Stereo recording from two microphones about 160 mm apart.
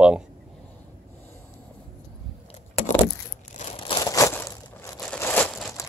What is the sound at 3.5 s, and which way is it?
Crumpling, 45° left (ahead or behind).